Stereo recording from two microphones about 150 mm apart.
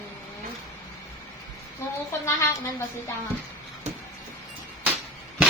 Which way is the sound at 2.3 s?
15° left (ahead or behind).